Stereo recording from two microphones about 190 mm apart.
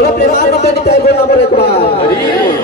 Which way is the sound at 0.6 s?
35° left (ahead or behind).